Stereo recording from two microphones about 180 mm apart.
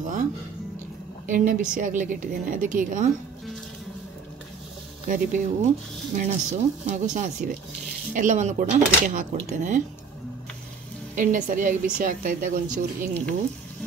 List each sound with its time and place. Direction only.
0.0 s a woman's voice: 45° right (ahead or behind)
5.0 s a woman's voice: 50° right (ahead or behind)
11.1 s a woman's voice: 45° right (ahead or behind)